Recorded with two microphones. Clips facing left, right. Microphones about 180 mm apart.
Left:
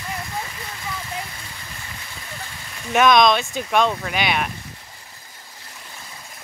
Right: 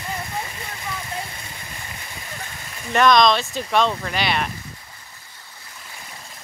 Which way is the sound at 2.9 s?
5° left (ahead or behind).